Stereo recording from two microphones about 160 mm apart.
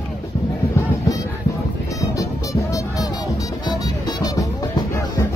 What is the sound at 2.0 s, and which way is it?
Music, 20° left (ahead or behind).